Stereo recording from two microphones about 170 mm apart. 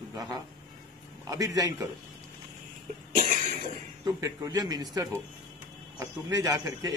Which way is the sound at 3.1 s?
50° right (ahead or behind).